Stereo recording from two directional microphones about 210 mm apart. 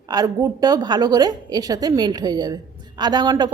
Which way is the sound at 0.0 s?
15° right (ahead or behind).